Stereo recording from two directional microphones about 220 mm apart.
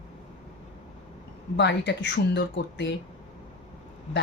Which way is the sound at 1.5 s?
50° left (ahead or behind).